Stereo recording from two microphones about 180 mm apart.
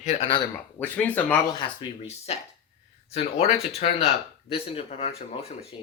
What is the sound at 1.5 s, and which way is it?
Speech, 30° left (ahead or behind).